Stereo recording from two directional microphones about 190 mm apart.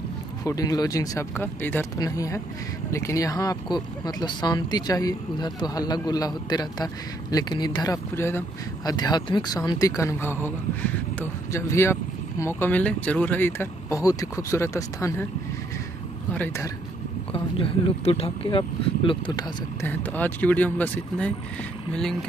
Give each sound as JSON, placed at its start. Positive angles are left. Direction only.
{"t": 0.4, "sound": "speech", "side_deg": 20}
{"t": 16.3, "sound": "speech", "side_deg": 15}
{"t": 17.3, "sound": "speech", "side_deg": 30}
{"t": 19.8, "sound": "speech", "side_deg": 10}